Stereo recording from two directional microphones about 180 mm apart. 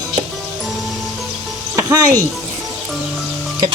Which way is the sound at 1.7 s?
20° right (ahead or behind).